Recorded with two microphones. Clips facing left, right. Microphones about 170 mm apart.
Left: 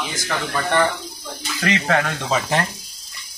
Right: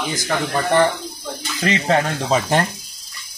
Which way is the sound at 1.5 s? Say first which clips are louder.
Right 2 dB; 25° right (ahead or behind).